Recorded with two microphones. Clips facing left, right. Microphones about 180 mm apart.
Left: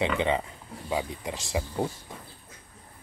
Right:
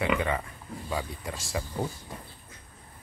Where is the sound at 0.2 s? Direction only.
20° left (ahead or behind).